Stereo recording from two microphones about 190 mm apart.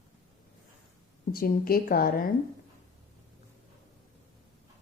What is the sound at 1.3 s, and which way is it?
Speech, 50° left (ahead or behind).